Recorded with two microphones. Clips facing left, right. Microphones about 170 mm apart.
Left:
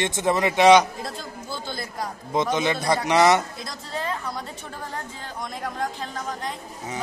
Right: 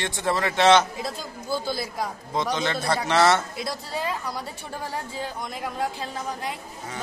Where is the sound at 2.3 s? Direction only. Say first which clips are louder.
Left 4 dB; 15° left (ahead or behind).